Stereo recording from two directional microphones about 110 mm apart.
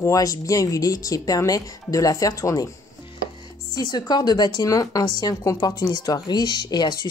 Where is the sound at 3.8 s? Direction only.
40° left (ahead or behind).